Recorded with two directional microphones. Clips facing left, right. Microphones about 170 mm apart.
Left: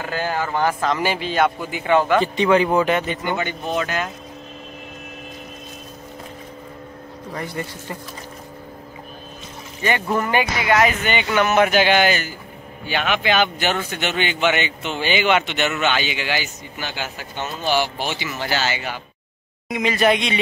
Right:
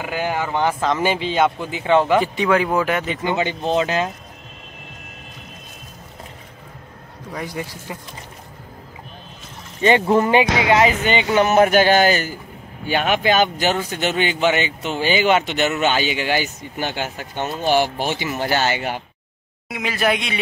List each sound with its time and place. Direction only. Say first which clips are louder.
0.0 s speech: right 1 dB; 15° right (ahead or behind)
2.1 s speech: left 1 dB; 5° right (ahead or behind)
3.3 s speech: right 3 dB; 20° right (ahead or behind)
7.3 s speech: right 1 dB; 10° right (ahead or behind)
9.8 s speech: right 6 dB; 25° right (ahead or behind); by 18.9 s 55° right (ahead or behind)
19.7 s speech: left 3 dB; 5° right (ahead or behind)